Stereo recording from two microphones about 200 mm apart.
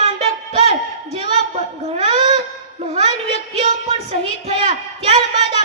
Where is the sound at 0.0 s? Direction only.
30° right (ahead or behind).